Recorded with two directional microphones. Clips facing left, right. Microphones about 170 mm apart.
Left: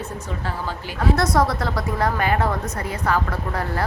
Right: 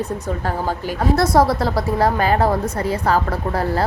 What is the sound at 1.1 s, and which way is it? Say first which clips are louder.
A woman's voice: right 4 dB; 30° right (ahead or behind).